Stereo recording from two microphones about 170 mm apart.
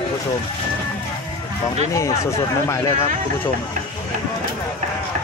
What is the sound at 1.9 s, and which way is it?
Speech, 20° left (ahead or behind).